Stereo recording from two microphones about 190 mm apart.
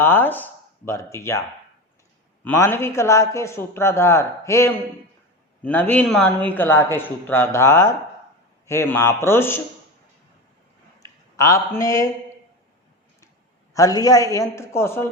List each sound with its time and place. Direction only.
0.0 s a man's voice: 10° left (ahead or behind)
11.0 s speech: 15° left (ahead or behind)
13.7 s a man's voice: 15° left (ahead or behind)